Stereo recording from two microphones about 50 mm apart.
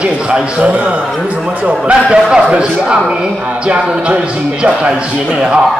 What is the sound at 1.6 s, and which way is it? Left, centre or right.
Speech, right.